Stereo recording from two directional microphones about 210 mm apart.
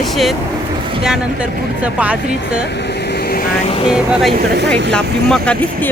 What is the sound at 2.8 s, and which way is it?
Vehicle, 55° left (ahead or behind).